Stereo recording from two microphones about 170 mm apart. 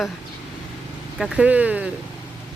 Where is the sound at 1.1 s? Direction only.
5° right (ahead or behind).